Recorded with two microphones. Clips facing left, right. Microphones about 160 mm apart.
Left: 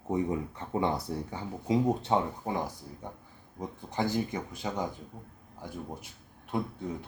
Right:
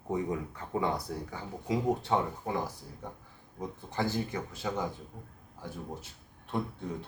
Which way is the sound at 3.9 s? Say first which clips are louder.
Left 2 dB; 20° left (ahead or behind).